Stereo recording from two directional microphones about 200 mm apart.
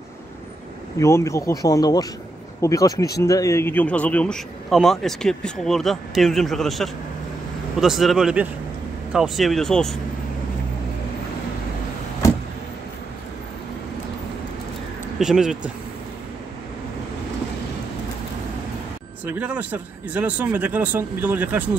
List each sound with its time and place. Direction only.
0.9 s speech: 15° left (ahead or behind)
15.1 s speech: centre (ahead or behind)
19.2 s speech: 10° right (ahead or behind)